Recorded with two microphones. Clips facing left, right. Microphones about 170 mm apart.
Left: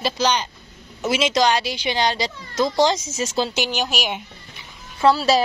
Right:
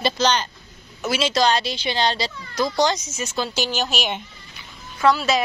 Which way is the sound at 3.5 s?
15° left (ahead or behind).